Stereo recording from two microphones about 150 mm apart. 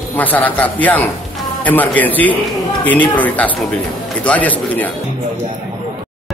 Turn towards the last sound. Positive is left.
turn(degrees=10)  # may be behind; listen again after turning